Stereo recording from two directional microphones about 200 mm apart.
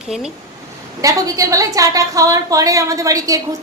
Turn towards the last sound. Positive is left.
turn(degrees=-15)  # may be behind; listen again after turning